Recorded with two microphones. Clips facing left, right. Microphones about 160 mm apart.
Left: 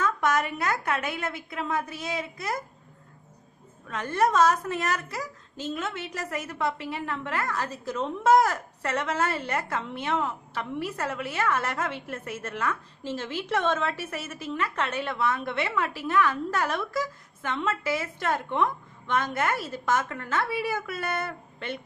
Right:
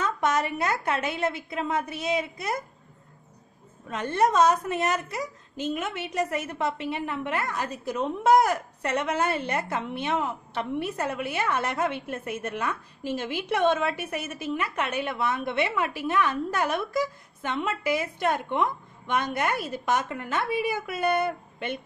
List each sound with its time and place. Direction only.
0.0 s a woman's voice: 20° right (ahead or behind)
3.8 s a woman's voice: 25° right (ahead or behind)